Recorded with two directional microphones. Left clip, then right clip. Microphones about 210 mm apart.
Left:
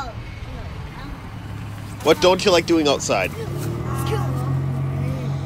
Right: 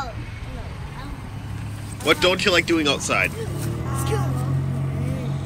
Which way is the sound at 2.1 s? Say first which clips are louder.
Left 3 dB; 15° left (ahead or behind).